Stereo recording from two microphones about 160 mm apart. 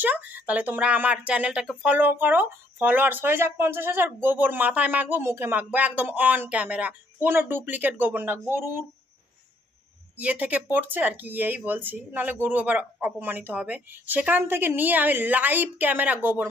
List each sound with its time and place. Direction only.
0.0 s speech: 10° right (ahead or behind)
10.1 s speech: 10° right (ahead or behind)